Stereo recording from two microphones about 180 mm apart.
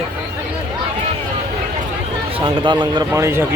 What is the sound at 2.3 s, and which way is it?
Speech, 25° right (ahead or behind).